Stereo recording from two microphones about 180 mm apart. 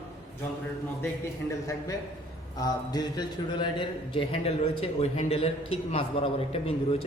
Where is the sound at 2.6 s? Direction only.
20° left (ahead or behind).